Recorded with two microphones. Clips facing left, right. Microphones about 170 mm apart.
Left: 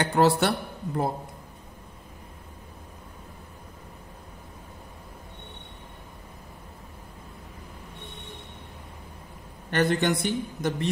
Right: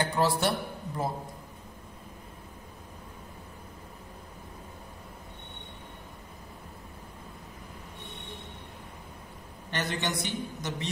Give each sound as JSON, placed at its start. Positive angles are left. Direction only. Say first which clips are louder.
{"t": 0.0, "sound": "a sound", "louder": "left 6 dB", "side_deg": 70}
{"t": 0.4, "sound": "a man's voice", "louder": "left 3 dB", "side_deg": 65}
{"t": 9.7, "sound": "a man's voice", "louder": "left 9 dB", "side_deg": 55}